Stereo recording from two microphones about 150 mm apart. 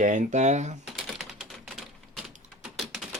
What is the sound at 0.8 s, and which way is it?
Typewriter, 5° right (ahead or behind).